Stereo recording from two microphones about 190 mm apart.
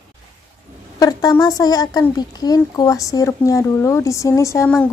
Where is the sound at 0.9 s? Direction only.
20° left (ahead or behind).